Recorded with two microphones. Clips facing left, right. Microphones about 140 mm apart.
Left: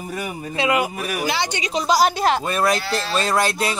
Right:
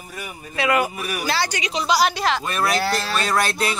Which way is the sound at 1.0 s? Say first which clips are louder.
Left 3 dB; 35° left (ahead or behind).